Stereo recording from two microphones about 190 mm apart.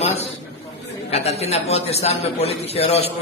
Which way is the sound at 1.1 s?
35° left (ahead or behind).